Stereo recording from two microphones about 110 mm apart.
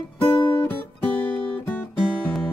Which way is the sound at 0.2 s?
20° left (ahead or behind).